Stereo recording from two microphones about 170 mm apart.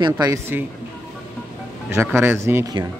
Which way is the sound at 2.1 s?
15° right (ahead or behind).